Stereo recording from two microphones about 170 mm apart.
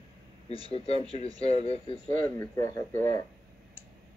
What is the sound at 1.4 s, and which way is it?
Speech, 35° left (ahead or behind).